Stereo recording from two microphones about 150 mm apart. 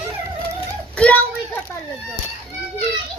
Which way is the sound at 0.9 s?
10° left (ahead or behind).